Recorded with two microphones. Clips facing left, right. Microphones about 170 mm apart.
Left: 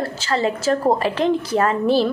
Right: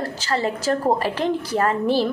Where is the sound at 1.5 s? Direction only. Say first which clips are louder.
Left 2 dB; 15° right (ahead or behind).